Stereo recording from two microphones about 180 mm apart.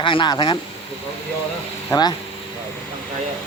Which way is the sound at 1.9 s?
25° left (ahead or behind).